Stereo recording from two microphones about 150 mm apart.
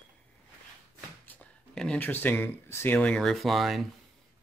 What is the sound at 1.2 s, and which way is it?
Speech, 5° left (ahead or behind).